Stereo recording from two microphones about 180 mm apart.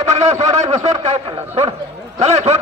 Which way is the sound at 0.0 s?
40° right (ahead or behind).